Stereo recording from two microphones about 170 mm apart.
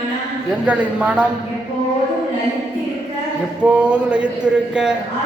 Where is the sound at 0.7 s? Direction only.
10° right (ahead or behind).